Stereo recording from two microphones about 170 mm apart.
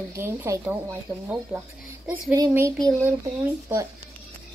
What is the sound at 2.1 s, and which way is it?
Speech, 15° right (ahead or behind).